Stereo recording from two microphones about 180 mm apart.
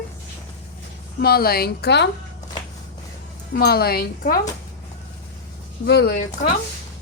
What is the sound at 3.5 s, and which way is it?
Speech, 60° left (ahead or behind).